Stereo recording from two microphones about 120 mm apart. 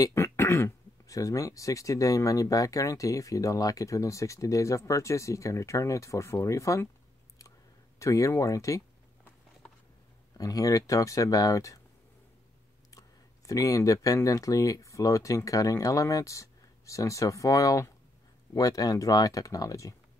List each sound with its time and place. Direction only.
0.0 s speech: 20° left (ahead or behind)
8.0 s speech: 25° left (ahead or behind)
10.3 s speech: 30° left (ahead or behind)
13.5 s speech: 25° left (ahead or behind)